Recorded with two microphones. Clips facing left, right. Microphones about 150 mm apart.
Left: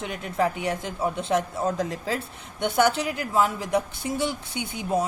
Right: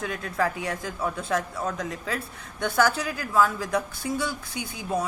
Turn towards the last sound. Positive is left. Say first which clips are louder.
# left 3 dB
turn(degrees=25)  # may be behind; listen again after turning